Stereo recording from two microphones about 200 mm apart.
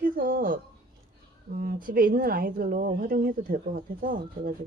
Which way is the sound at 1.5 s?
45° right (ahead or behind).